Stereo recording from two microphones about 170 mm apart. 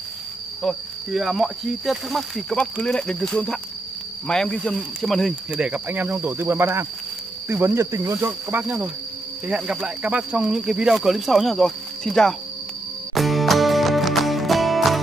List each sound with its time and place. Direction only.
0.6 s speech: centre (ahead or behind)
8.6 s speech: 5° right (ahead or behind)
13.1 s music: centre (ahead or behind)